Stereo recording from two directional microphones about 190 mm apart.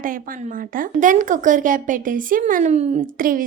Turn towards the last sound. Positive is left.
turn(degrees=-45)  # may be behind; listen again after turning